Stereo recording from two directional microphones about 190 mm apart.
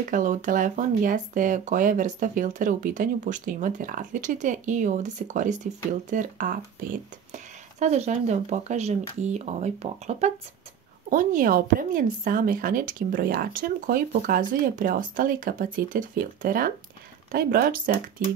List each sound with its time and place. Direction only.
0.1 s speech: 45° right (ahead or behind)